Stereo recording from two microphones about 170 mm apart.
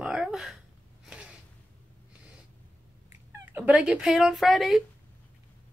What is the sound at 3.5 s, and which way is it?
Speech, 10° right (ahead or behind).